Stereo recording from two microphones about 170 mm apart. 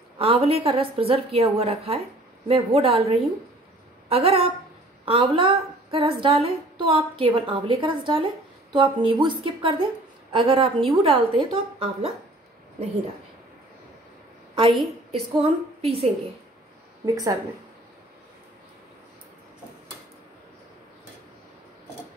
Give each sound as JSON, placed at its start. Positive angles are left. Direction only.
{"t": 0.2, "sound": "speech", "side_deg": -35}
{"t": 14.5, "sound": "a sound", "side_deg": -30}
{"t": 15.1, "sound": "speech", "side_deg": -35}
{"t": 17.0, "sound": "speech", "side_deg": -20}